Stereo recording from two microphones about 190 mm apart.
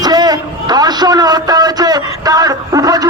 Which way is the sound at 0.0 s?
20° right (ahead or behind).